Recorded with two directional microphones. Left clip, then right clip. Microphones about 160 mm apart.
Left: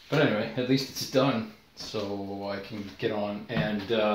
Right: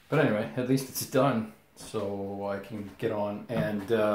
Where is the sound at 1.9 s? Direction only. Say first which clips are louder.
Right 1 dB; 20° right (ahead or behind).